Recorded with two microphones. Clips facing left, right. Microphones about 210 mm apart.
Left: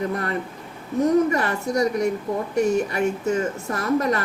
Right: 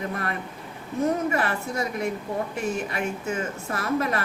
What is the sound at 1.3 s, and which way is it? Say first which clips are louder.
A woman's voice: left 4 dB; 40° left (ahead or behind).